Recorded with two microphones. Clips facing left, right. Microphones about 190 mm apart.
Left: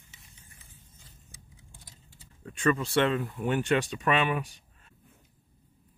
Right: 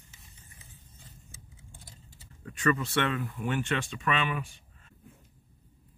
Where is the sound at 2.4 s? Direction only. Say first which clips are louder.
Left 1 dB; 25° left (ahead or behind).